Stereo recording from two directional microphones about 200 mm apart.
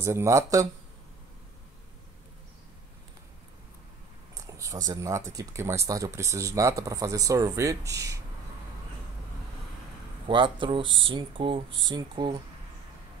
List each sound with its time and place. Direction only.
0.0 s speech: 15° right (ahead or behind)
4.4 s a sound: 15° right (ahead or behind)
4.8 s speech: 20° right (ahead or behind)
10.2 s speech: 25° right (ahead or behind)